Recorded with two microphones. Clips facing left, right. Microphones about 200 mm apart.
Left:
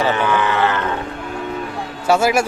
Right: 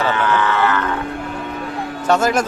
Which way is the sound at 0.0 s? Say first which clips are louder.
Left 1 dB; 15° left (ahead or behind).